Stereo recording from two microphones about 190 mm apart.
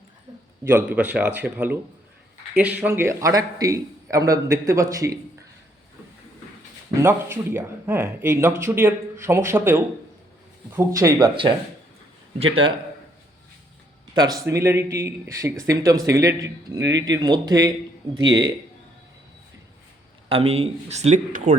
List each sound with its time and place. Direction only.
0.9 s speech: 5° right (ahead or behind)
7.0 s speech: 10° right (ahead or behind)
14.1 s speech: 20° right (ahead or behind)
16.8 s speech: 70° right (ahead or behind)
17.2 s speech: 20° right (ahead or behind)
20.3 s speech: 30° right (ahead or behind)